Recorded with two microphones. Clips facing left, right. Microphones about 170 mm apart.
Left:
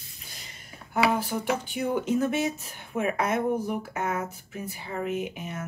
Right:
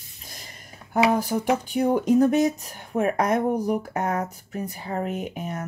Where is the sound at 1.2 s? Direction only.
40° right (ahead or behind).